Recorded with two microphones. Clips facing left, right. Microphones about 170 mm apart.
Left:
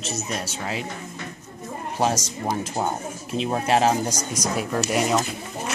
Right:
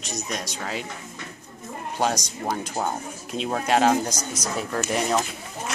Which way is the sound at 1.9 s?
5° left (ahead or behind).